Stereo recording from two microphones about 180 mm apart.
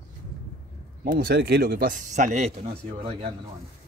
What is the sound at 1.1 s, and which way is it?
Speech, 55° right (ahead or behind).